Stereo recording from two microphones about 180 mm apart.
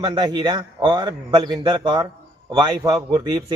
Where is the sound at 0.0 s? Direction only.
25° right (ahead or behind).